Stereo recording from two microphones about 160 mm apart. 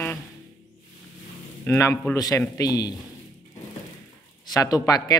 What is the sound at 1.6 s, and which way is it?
Speech, 15° left (ahead or behind).